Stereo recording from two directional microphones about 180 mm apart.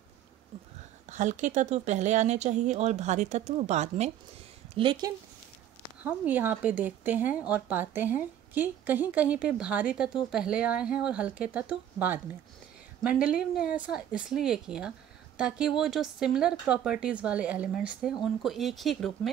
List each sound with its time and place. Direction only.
1.1 s speech: 45° right (ahead or behind)
4.7 s speech: 25° right (ahead or behind)
6.0 s a woman's voice: 10° right (ahead or behind)